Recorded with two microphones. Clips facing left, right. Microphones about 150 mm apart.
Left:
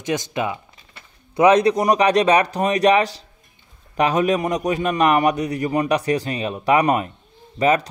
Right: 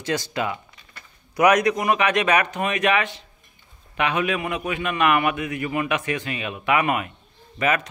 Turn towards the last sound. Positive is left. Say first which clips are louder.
# left 5 dB
turn(degrees=35)  # may be behind; listen again after turning